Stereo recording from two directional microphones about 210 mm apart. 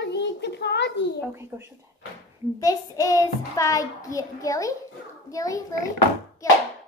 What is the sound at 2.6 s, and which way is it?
A woman's voice, 15° left (ahead or behind).